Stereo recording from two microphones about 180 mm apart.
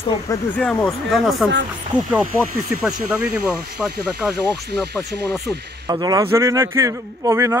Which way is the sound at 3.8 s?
5° right (ahead or behind).